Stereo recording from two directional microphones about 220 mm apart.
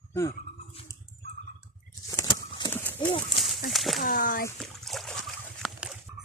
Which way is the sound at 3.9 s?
40° left (ahead or behind).